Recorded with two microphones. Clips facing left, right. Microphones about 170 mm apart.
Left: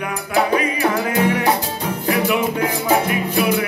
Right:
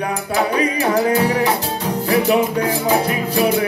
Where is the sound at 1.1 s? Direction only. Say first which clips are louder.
Right 1 dB; 35° right (ahead or behind).